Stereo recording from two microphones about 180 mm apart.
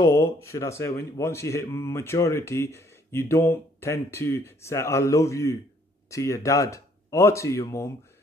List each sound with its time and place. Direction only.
0.0 s speech: 15° left (ahead or behind)